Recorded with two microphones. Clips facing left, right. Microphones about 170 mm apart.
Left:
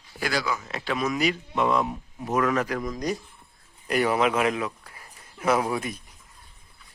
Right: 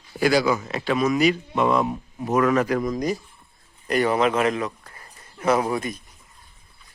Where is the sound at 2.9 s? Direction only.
5° right (ahead or behind).